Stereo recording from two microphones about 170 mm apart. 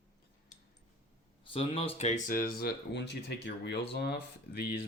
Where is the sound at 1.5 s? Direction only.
30° left (ahead or behind); by 3.7 s 90° left.